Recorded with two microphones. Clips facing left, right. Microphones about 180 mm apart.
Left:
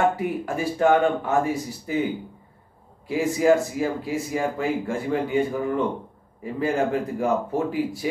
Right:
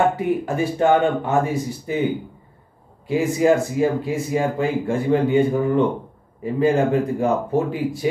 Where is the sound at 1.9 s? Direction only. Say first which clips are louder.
Even; 25° right (ahead or behind).